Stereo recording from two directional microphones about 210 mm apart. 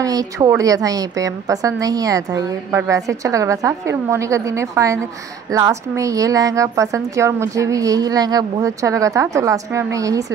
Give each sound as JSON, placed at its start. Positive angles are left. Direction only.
{"t": 0.0, "sound": "a woman's voice", "side_deg": -15}